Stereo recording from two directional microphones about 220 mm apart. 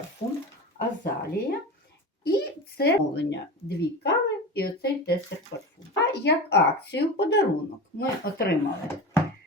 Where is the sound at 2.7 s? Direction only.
45° left (ahead or behind).